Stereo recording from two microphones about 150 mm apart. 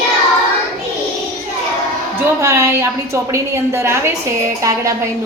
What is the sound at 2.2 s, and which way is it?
A woman's voice, 20° right (ahead or behind).